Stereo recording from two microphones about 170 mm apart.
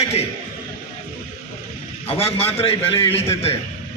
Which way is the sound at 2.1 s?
35° left (ahead or behind).